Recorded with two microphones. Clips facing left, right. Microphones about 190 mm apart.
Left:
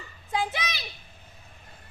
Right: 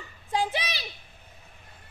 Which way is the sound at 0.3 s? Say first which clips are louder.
Right 1 dB; 35° right (ahead or behind).